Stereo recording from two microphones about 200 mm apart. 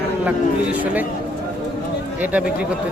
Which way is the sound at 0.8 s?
5° right (ahead or behind).